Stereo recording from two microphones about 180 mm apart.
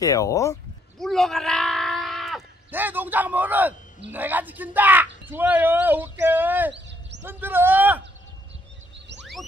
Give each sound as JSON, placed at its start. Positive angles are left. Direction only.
{"t": 0.0, "sound": "speech", "side_deg": 20}
{"t": 0.9, "sound": "screaming", "side_deg": 0}
{"t": 4.1, "sound": "speech", "side_deg": -10}